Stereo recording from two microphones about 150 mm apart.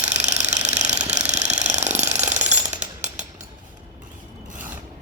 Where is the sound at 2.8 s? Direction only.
55° right (ahead or behind).